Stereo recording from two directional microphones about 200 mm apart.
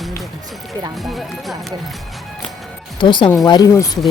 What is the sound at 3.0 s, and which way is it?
Speech, 25° left (ahead or behind).